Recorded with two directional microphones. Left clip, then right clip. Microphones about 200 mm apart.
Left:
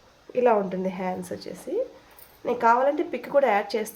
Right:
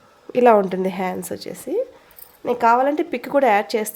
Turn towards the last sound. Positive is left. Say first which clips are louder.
# right 5 dB
turn(degrees=-50)  # may be behind; listen again after turning